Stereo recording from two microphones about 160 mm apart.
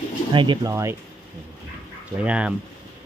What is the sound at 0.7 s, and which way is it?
Speech, 20° right (ahead or behind).